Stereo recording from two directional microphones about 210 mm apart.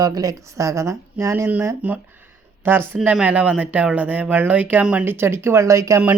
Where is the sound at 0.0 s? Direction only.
15° right (ahead or behind).